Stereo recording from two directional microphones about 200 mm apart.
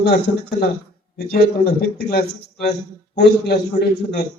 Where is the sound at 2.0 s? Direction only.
50° left (ahead or behind).